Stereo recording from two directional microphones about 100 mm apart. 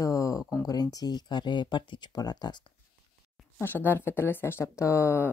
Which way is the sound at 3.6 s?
20° left (ahead or behind).